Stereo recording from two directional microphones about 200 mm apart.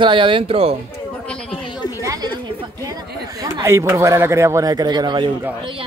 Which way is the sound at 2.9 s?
15° right (ahead or behind).